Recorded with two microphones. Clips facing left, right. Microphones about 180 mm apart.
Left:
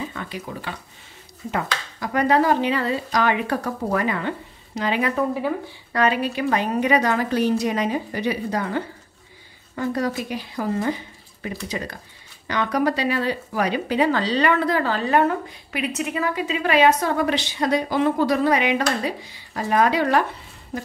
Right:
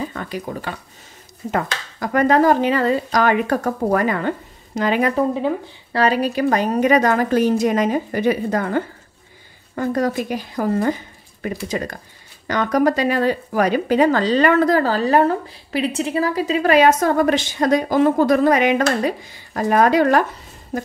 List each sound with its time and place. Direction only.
0.0 s speech: 45° right (ahead or behind)
5.1 s speech: 25° right (ahead or behind)
5.9 s speech: 40° right (ahead or behind)